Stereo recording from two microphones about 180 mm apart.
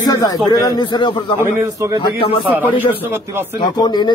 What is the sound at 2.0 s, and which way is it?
Speech, 25° left (ahead or behind).